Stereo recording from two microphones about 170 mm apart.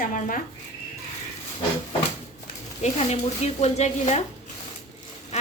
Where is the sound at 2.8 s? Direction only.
40° left (ahead or behind).